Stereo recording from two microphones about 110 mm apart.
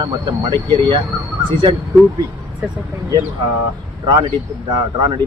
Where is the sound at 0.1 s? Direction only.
40° right (ahead or behind).